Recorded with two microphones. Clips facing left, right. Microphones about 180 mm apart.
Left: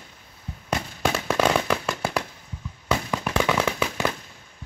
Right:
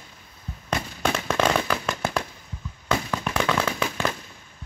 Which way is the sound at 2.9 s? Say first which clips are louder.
Even; 10° left (ahead or behind).